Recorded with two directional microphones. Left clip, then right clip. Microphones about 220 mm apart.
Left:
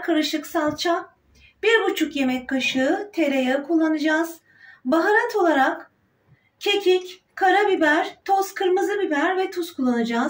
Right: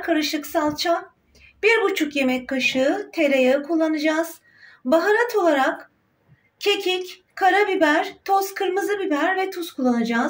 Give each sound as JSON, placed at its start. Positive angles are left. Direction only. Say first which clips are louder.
{"t": 0.0, "sound": "speech", "louder": "even", "side_deg": -50}